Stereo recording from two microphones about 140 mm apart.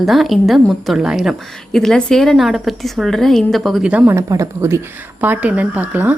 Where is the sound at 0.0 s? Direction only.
Centre (ahead or behind).